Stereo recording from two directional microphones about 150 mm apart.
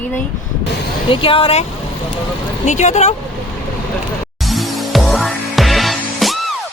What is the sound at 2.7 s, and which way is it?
Speech, 50° left (ahead or behind).